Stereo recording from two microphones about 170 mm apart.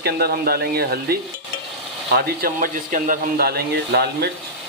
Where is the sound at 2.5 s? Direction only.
50° right (ahead or behind); by 4.3 s 70° right (ahead or behind).